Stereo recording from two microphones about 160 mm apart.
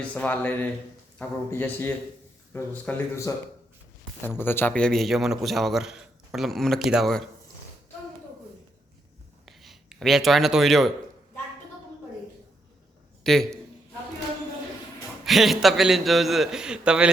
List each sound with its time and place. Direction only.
0.1 s speech: 10° left (ahead or behind)
4.4 s a man's voice: 15° left (ahead or behind)
9.5 s speech: centre (ahead or behind)
13.2 s a man's voice: 5° left (ahead or behind)
15.2 s a man's voice: centre (ahead or behind)